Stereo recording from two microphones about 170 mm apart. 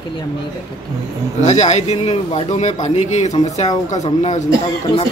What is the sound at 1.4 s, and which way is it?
A man's voice, 45° left (ahead or behind).